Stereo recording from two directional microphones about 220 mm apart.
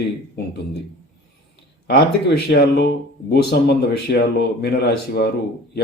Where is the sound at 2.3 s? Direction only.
50° left (ahead or behind).